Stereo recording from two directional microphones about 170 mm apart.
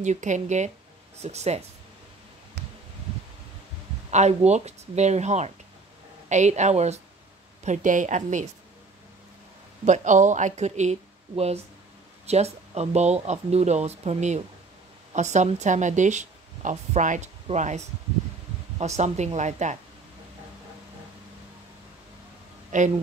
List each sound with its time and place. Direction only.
0.0 s speech: 45° right (ahead or behind)
4.1 s speech: 40° right (ahead or behind)
9.8 s a woman's voice: 45° right (ahead or behind)
22.7 s speech: 45° right (ahead or behind)